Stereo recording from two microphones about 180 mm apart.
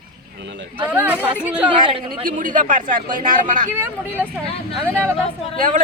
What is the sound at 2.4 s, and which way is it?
Speech, 45° right (ahead or behind).